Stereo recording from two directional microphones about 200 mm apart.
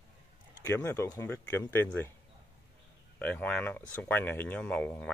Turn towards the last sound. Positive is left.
turn(degrees=5)  # may be behind; listen again after turning